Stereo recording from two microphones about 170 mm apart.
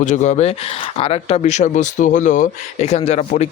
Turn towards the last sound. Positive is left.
turn(degrees=40)  # may be behind; listen again after turning